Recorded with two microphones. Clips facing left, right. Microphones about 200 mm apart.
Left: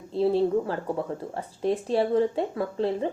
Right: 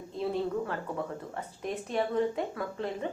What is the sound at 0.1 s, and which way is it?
A woman's voice, 30° left (ahead or behind).